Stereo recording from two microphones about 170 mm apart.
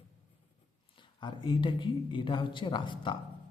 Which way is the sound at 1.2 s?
25° left (ahead or behind).